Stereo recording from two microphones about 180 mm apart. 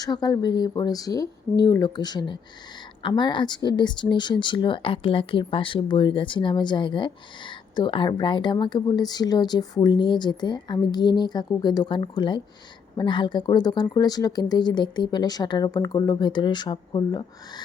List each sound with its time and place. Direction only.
0.0 s speech: 20° left (ahead or behind)